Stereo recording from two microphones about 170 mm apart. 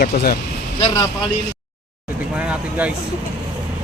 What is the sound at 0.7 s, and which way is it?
Speech, 30° left (ahead or behind).